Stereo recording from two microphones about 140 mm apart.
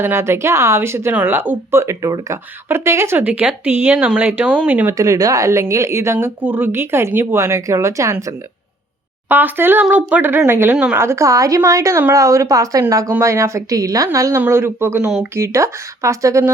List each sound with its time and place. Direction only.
0.0 s speech: 15° right (ahead or behind)
4.9 s speech: 25° right (ahead or behind)
9.3 s speech: 15° right (ahead or behind)